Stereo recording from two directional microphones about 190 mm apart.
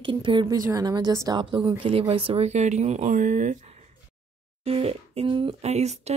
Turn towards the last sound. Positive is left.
turn(degrees=-35)  # may be behind; listen again after turning